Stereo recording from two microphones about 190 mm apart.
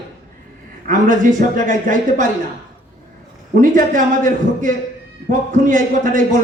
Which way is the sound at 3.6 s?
45° right (ahead or behind).